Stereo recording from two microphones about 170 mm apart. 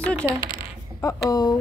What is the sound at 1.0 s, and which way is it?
Speech, 20° left (ahead or behind).